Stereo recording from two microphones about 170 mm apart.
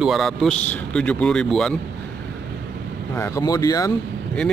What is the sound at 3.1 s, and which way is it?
Speech, 20° left (ahead or behind).